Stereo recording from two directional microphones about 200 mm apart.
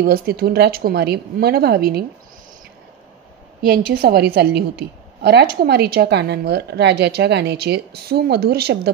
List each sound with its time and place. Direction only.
0.0 s a woman's voice: 50° right (ahead or behind)
3.6 s a woman's voice: 50° right (ahead or behind)